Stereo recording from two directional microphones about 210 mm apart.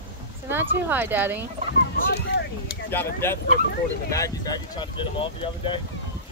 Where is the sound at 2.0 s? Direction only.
50° left (ahead or behind).